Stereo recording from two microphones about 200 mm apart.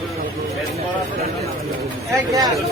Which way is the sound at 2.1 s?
15° right (ahead or behind).